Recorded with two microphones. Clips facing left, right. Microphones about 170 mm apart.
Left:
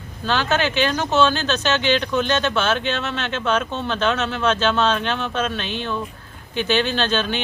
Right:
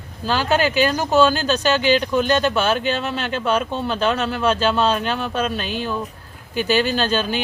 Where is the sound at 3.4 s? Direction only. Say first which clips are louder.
Right 1 dB; 10° right (ahead or behind).